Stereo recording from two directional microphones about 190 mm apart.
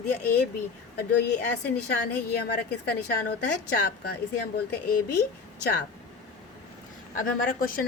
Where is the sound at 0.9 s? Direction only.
60° left (ahead or behind).